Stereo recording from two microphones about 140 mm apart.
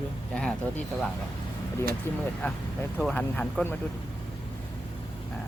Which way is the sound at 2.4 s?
10° left (ahead or behind).